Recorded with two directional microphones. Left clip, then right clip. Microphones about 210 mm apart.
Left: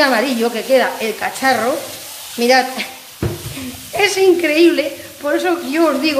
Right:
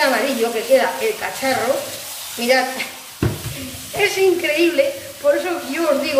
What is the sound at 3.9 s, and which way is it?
Speech, 50° left (ahead or behind).